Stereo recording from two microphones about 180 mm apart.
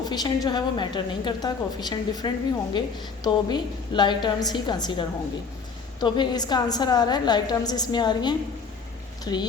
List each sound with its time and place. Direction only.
0.0 s a woman's voice: 25° left (ahead or behind)